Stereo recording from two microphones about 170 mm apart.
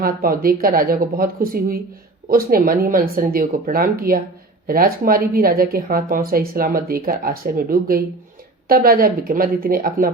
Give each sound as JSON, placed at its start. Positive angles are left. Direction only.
{"t": 0.0, "sound": "a woman's voice", "side_deg": -60}